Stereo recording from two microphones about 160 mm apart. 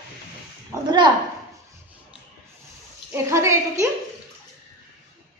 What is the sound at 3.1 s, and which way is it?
Speech, 20° right (ahead or behind).